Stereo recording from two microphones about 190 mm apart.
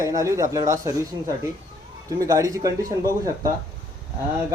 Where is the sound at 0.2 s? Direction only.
15° right (ahead or behind).